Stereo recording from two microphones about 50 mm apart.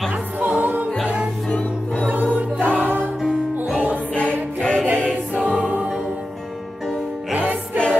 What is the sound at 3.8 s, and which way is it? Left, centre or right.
Music, right.